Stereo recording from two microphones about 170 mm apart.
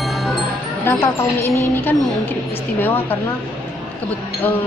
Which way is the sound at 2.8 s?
10° left (ahead or behind).